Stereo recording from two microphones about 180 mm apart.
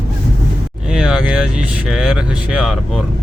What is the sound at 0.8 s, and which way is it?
Speech, 5° right (ahead or behind).